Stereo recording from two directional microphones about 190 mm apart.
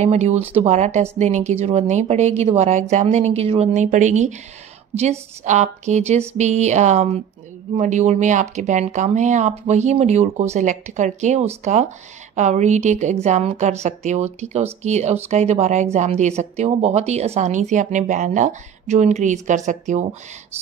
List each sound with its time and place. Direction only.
0.0 s speech: 35° right (ahead or behind)
5.4 s speech: 40° right (ahead or behind)